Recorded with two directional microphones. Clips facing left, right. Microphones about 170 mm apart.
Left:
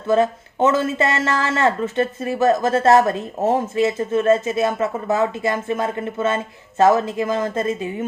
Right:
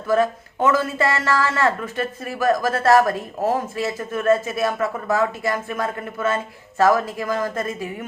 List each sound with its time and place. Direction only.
0.1 s speech: 25° left (ahead or behind)